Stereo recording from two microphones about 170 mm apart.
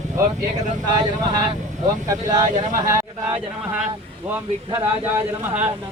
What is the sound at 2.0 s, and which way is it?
Speech, 20° right (ahead or behind).